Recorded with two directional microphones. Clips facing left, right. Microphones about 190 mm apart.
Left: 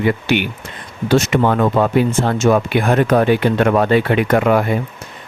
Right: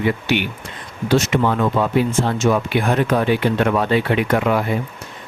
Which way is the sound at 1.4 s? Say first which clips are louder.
Left 3 dB; 55° left (ahead or behind).